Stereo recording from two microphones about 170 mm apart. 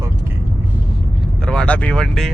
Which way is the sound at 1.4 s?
5° left (ahead or behind).